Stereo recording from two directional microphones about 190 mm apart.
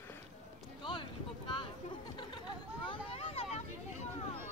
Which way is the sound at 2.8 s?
30° left (ahead or behind).